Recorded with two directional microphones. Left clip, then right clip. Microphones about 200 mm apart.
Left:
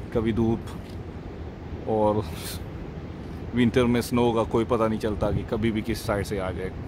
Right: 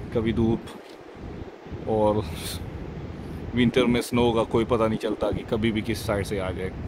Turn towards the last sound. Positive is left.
turn(degrees=5)  # may be behind; listen again after turning